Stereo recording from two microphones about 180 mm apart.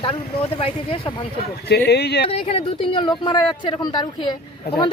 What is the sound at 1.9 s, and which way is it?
Speech, 65° left (ahead or behind).